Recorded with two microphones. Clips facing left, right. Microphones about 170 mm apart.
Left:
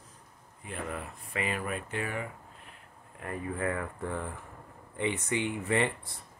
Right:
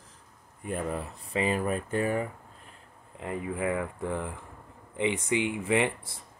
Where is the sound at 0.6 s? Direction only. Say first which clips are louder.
Right 6 dB; 40° right (ahead or behind).